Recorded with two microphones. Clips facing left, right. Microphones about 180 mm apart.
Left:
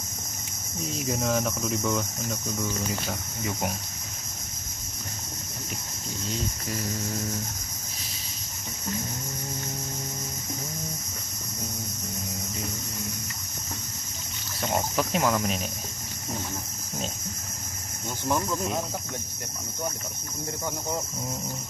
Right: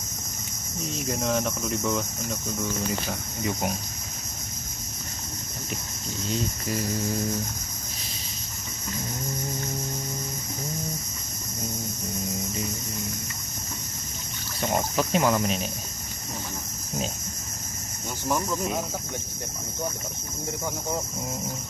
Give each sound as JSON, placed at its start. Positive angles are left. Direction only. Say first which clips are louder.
{"t": 0.7, "sound": "cricket", "louder": "even", "side_deg": 0}
{"t": 15.0, "sound": "cricket", "louder": "right 3 dB", "side_deg": 0}